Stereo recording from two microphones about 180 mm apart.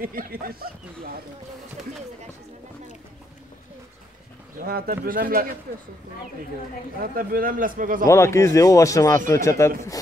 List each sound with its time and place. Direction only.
0.0 s speech: 55° right (ahead or behind)
4.6 s a man's voice: 55° right (ahead or behind)
7.0 s a man's voice: 50° right (ahead or behind)
8.1 s speech: 15° left (ahead or behind)